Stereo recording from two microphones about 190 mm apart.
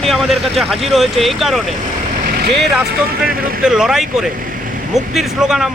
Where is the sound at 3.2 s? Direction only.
50° right (ahead or behind).